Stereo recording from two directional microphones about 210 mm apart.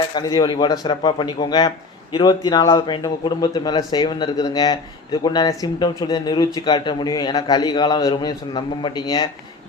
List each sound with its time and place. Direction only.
0.1 s speech: 20° left (ahead or behind)